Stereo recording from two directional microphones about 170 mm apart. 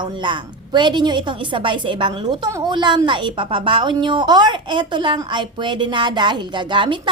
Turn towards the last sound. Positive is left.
turn(degrees=-30)  # may be behind; listen again after turning